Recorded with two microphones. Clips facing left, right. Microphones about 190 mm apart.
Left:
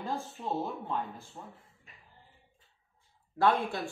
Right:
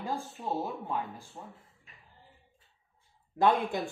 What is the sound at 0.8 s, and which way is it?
Speech, 10° right (ahead or behind).